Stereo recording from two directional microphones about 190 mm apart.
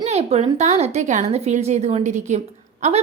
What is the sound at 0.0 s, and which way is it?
A woman's voice, 35° right (ahead or behind).